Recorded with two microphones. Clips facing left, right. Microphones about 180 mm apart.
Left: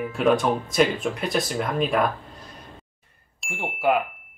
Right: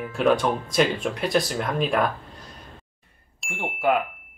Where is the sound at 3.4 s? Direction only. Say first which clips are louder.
Even; centre (ahead or behind).